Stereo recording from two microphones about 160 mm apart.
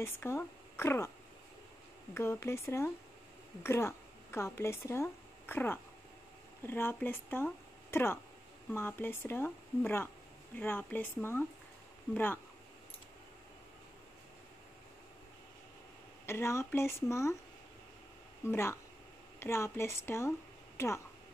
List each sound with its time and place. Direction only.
0.0 s a woman's voice: 15° left (ahead or behind)
2.1 s speech: 15° left (ahead or behind)
16.3 s speech: 15° left (ahead or behind)
18.4 s speech: 15° left (ahead or behind)